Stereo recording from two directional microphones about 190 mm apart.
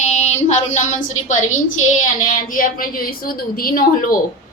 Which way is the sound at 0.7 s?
40° left (ahead or behind).